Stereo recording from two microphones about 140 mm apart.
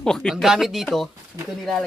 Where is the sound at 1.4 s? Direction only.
25° right (ahead or behind).